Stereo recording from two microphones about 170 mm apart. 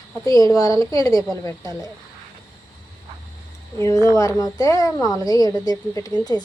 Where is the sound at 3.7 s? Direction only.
20° left (ahead or behind).